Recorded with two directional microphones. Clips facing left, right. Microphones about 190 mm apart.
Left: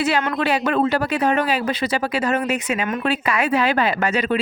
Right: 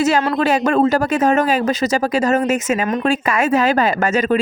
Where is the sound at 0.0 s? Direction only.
40° right (ahead or behind).